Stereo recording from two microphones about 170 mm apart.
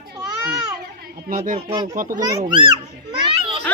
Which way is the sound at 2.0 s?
50° right (ahead or behind).